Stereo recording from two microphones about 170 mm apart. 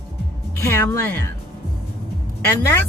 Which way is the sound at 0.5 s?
15° left (ahead or behind).